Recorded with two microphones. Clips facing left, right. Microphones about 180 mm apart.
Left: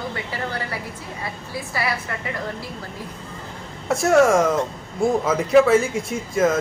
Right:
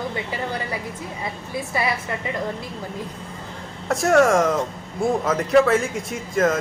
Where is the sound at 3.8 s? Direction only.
Centre (ahead or behind).